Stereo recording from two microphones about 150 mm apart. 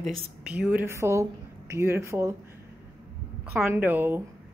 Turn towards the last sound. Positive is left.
turn(degrees=-10)  # may be behind; listen again after turning